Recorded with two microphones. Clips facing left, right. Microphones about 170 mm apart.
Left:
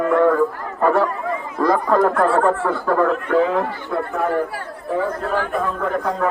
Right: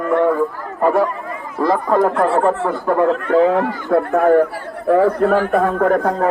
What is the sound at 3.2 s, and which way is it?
Speech, 40° right (ahead or behind).